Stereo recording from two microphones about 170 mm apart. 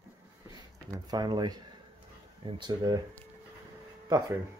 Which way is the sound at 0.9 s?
25° right (ahead or behind).